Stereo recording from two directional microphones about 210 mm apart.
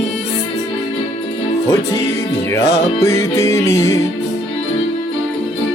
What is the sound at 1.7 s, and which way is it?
Music, 15° left (ahead or behind).